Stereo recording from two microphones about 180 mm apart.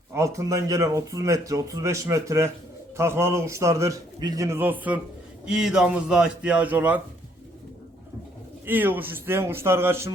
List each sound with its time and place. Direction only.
0.1 s a man's voice: 15° right (ahead or behind)
8.6 s speech: 10° right (ahead or behind)